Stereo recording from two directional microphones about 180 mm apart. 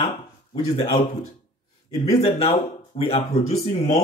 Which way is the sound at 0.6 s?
35° left (ahead or behind).